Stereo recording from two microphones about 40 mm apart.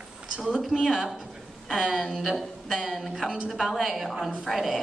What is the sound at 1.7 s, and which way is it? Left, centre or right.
Speech, centre.